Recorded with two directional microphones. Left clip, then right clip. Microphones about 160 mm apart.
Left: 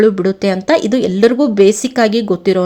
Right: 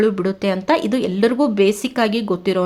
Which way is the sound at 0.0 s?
25° left (ahead or behind).